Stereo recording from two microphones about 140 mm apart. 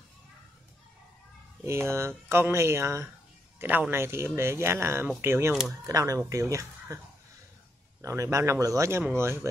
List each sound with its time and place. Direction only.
1.6 s speech: 20° right (ahead or behind)
5.5 s speech: 5° right (ahead or behind)
5.9 s speech: 25° right (ahead or behind)
8.0 s speech: 20° right (ahead or behind)